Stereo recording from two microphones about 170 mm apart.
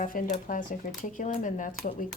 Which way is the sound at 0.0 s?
50° left (ahead or behind).